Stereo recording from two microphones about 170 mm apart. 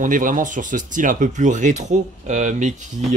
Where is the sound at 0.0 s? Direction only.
50° right (ahead or behind).